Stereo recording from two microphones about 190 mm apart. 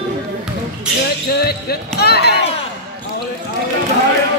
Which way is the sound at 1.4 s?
55° left (ahead or behind).